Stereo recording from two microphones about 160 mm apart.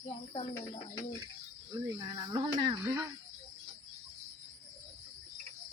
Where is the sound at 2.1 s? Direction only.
25° right (ahead or behind).